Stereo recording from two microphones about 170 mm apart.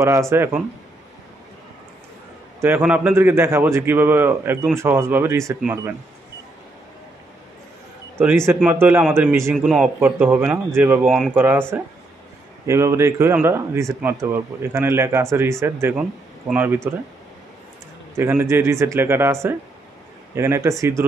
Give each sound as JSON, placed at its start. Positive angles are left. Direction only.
{"t": 0.0, "sound": "a man's voice", "side_deg": -15}
{"t": 2.6, "sound": "a man's voice", "side_deg": -10}
{"t": 8.5, "sound": "a man's voice", "side_deg": -10}
{"t": 11.1, "sound": "speech", "side_deg": 0}
{"t": 11.3, "sound": "a man's voice", "side_deg": -10}
{"t": 12.6, "sound": "a man's voice", "side_deg": -15}
{"t": 18.1, "sound": "a man's voice", "side_deg": -15}
{"t": 20.3, "sound": "a man's voice", "side_deg": -15}